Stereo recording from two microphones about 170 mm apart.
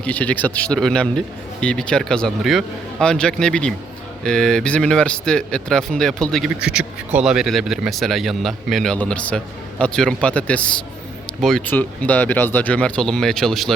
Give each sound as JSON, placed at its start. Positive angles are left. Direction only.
{"t": 0.0, "sound": "a man's voice", "side_deg": 10}